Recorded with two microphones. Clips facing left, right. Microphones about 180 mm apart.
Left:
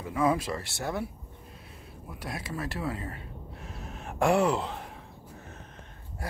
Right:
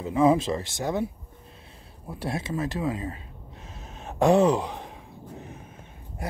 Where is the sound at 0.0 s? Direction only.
25° right (ahead or behind).